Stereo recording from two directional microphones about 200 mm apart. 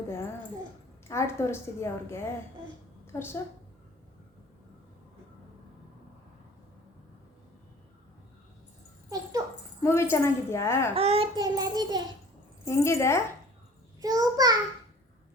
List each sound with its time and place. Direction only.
1.0 s a woman's voice: 15° left (ahead or behind)
9.0 s dog: 20° right (ahead or behind)
9.8 s a woman's voice: 15° left (ahead or behind)
10.9 s a child's voice: 30° right (ahead or behind)
12.6 s a woman's voice: 15° left (ahead or behind)
14.0 s a child's voice: 20° right (ahead or behind)